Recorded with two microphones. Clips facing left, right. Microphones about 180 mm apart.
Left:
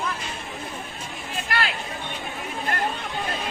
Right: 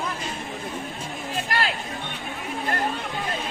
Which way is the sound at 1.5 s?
35° right (ahead or behind).